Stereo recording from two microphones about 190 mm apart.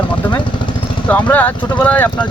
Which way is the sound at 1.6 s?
25° left (ahead or behind).